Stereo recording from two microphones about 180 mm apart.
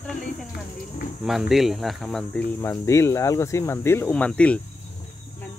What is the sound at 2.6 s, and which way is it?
Speech, 15° left (ahead or behind).